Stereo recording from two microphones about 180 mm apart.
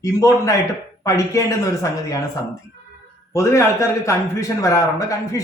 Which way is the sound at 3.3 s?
15° left (ahead or behind).